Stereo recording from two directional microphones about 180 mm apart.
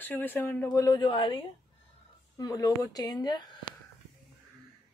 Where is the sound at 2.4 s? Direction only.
20° left (ahead or behind).